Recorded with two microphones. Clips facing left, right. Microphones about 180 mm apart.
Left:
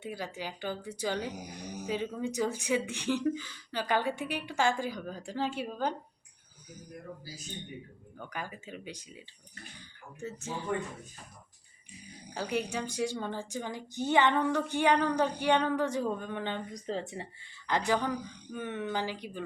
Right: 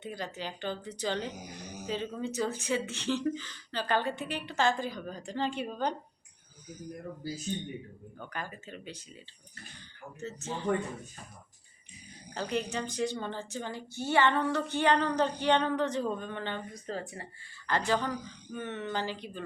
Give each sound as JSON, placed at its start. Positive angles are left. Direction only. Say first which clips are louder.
{"t": 0.0, "sound": "a woman's voice", "louder": "even", "side_deg": 10}
{"t": 8.2, "sound": "a woman's voice", "louder": "even", "side_deg": 10}
{"t": 10.2, "sound": "a woman's voice", "louder": "even", "side_deg": 10}
{"t": 12.3, "sound": "a woman's voice", "louder": "even", "side_deg": 10}